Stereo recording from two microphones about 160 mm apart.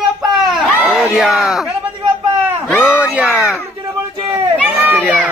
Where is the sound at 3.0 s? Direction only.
10° right (ahead or behind).